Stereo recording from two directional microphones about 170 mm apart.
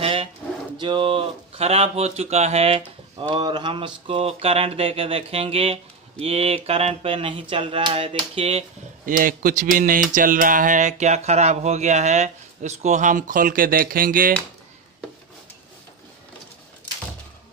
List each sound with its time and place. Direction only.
0.0 s a sound: 35° right (ahead or behind)
0.7 s speech: 30° right (ahead or behind)
9.0 s speech: 55° right (ahead or behind)